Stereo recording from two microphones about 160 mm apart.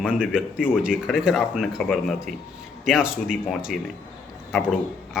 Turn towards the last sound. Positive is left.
turn(degrees=0)  # may be behind; listen again after turning